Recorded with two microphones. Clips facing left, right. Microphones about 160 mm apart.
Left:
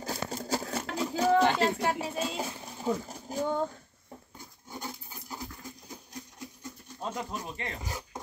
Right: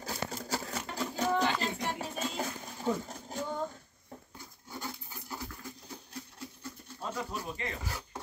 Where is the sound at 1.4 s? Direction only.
70° left (ahead or behind).